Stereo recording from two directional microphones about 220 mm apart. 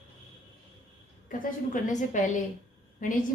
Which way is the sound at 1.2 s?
35° left (ahead or behind).